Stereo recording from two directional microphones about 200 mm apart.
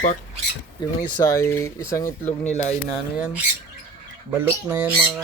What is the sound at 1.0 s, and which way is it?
Speech, 15° left (ahead or behind).